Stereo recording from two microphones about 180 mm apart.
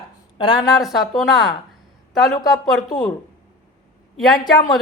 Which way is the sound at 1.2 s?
Centre (ahead or behind).